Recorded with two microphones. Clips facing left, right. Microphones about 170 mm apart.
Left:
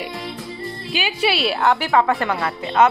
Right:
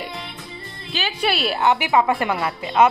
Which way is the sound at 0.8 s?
10° left (ahead or behind).